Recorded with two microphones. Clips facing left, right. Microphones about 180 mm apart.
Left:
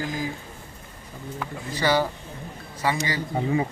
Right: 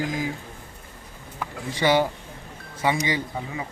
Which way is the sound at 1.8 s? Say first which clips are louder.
Right 2 dB; 20° right (ahead or behind).